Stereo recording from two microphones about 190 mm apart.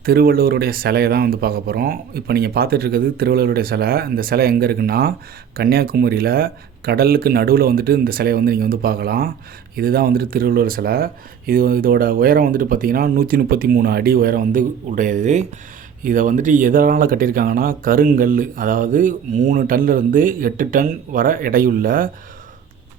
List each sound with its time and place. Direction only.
0.0 s speech: 50° right (ahead or behind)